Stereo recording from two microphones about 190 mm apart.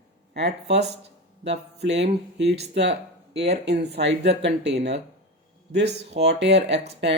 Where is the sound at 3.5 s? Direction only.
60° right (ahead or behind).